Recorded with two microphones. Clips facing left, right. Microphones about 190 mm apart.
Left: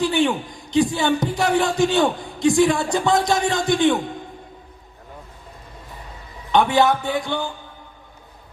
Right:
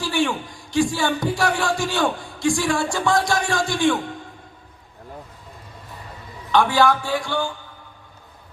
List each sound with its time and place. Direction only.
0.0 s speech: 20° left (ahead or behind)
6.5 s speech: 20° left (ahead or behind)